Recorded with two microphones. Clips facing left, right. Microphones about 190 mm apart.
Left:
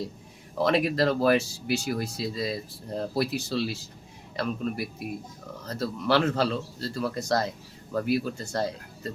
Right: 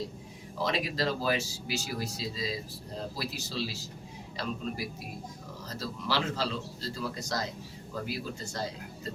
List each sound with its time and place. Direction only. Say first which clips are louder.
0.6 s speech: left 7 dB; 60° left (ahead or behind)